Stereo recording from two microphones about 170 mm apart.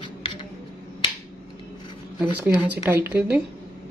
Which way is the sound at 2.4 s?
10° right (ahead or behind).